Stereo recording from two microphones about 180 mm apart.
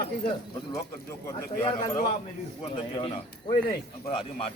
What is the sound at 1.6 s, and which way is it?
Speech, 30° left (ahead or behind).